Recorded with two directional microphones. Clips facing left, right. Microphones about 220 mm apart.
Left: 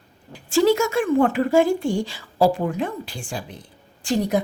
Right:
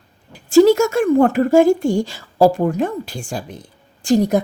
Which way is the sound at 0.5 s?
45° right (ahead or behind).